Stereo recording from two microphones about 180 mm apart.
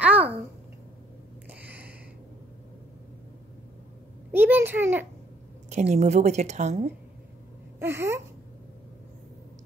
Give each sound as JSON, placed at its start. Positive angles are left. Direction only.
{"t": 0.0, "sound": "babbling", "side_deg": -10}
{"t": 1.5, "sound": "a sound", "side_deg": -10}
{"t": 4.3, "sound": "a child's voice", "side_deg": -10}
{"t": 5.7, "sound": "a woman's voice", "side_deg": -40}
{"t": 7.8, "sound": "a child's voice", "side_deg": -15}